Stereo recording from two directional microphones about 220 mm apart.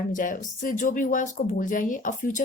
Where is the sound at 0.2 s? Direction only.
35° left (ahead or behind).